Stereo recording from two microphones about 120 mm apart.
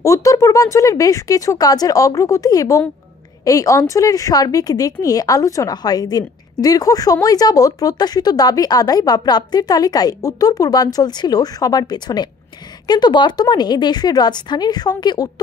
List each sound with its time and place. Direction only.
0.0 s a woman's voice: 25° left (ahead or behind)